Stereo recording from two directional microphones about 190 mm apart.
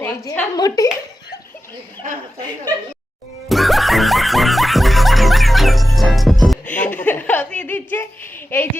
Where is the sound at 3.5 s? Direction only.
Centre (ahead or behind).